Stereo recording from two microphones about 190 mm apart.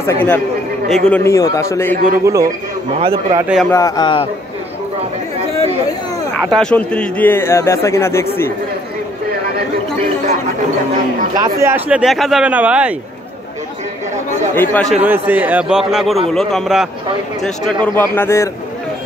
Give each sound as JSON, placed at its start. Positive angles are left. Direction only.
{"t": 0.0, "sound": "a man's voice", "side_deg": 10}
{"t": 2.2, "sound": "a man's voice", "side_deg": -15}
{"t": 3.7, "sound": "speech", "side_deg": 20}
{"t": 6.5, "sound": "a man's voice", "side_deg": 5}
{"t": 11.6, "sound": "speech", "side_deg": -10}
{"t": 14.5, "sound": "a man's voice", "side_deg": 10}
{"t": 15.0, "sound": "speech", "side_deg": -10}
{"t": 17.8, "sound": "a man's voice", "side_deg": 10}